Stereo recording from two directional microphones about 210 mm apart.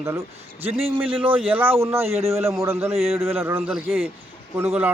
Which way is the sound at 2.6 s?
10° right (ahead or behind).